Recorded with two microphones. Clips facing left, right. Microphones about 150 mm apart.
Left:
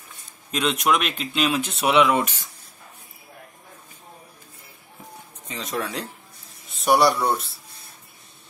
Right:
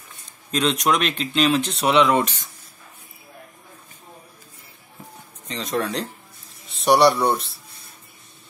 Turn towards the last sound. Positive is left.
turn(degrees=0)  # may be behind; listen again after turning